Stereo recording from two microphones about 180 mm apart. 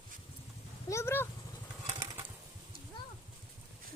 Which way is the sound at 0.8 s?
15° left (ahead or behind).